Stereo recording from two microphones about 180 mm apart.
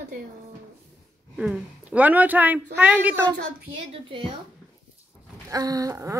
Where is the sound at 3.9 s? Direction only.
30° right (ahead or behind).